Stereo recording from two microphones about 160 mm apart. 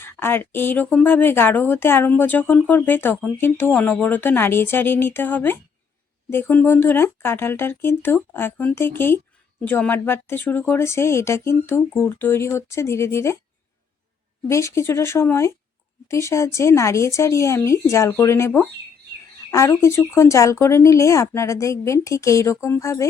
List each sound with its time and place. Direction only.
0.0 s speech: 15° left (ahead or behind)
14.4 s a woman's voice: 20° left (ahead or behind)